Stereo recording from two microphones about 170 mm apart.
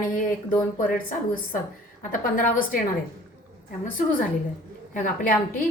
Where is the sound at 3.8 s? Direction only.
55° left (ahead or behind).